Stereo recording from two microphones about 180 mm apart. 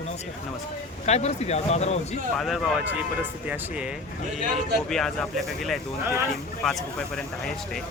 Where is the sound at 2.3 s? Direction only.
Centre (ahead or behind).